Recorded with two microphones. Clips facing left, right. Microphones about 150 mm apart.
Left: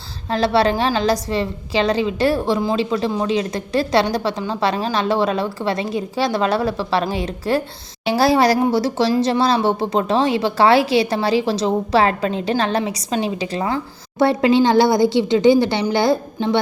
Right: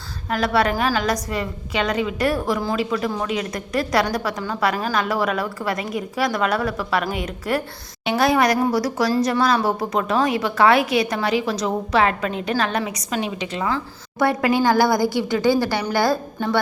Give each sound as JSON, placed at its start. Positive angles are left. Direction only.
{"t": 0.3, "sound": "a woman's voice", "side_deg": 30}